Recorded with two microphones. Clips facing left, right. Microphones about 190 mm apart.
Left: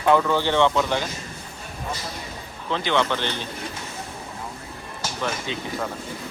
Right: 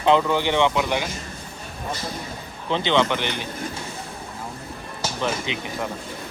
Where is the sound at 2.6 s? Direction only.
30° right (ahead or behind).